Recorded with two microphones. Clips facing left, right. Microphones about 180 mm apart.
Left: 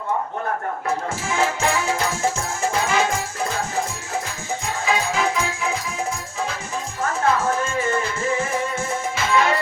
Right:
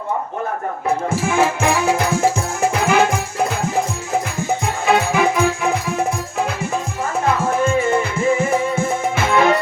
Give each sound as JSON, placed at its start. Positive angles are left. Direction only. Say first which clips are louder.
{"t": 1.2, "sound": "music", "louder": "right 4 dB", "side_deg": -60}
{"t": 4.6, "sound": "music", "louder": "right 5 dB", "side_deg": -60}
{"t": 9.1, "sound": "music", "louder": "right 3 dB", "side_deg": -60}